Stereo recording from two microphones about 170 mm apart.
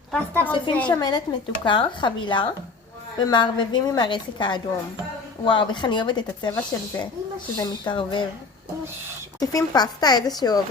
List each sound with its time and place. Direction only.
0.1 s a woman's voice: 10° left (ahead or behind)
0.5 s speech: 30° left (ahead or behind)
9.4 s speech: 20° left (ahead or behind)